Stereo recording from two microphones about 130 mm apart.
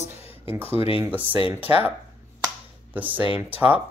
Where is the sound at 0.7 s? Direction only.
45° left (ahead or behind).